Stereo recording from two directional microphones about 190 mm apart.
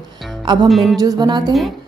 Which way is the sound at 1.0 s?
20° right (ahead or behind).